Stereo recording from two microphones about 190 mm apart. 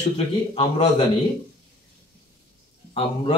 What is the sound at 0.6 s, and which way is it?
Speech, 30° left (ahead or behind).